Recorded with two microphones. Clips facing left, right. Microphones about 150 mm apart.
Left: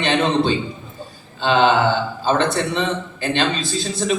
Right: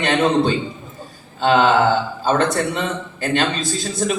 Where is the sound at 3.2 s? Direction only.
45° right (ahead or behind).